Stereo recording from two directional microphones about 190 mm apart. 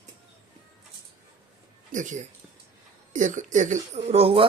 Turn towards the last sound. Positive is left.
turn(degrees=-30)  # may be behind; listen again after turning